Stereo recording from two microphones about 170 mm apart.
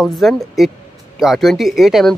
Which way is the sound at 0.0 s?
Centre (ahead or behind).